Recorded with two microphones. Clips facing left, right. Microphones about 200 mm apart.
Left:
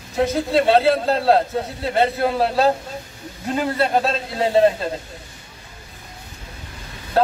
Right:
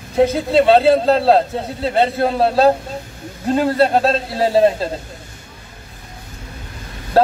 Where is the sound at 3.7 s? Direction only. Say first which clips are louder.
Right 4 dB; 35° right (ahead or behind).